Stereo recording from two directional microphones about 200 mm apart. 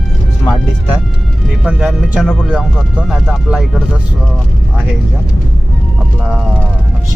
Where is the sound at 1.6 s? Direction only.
5° right (ahead or behind).